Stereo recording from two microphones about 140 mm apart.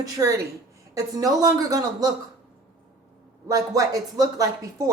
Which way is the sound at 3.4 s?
25° right (ahead or behind).